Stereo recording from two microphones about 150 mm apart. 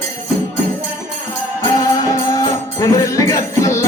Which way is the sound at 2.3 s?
20° left (ahead or behind).